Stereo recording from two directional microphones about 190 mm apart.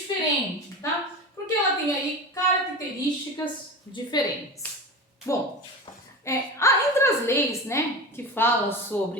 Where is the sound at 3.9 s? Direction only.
20° left (ahead or behind).